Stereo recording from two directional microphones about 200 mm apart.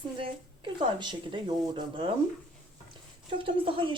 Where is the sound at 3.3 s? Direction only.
25° right (ahead or behind).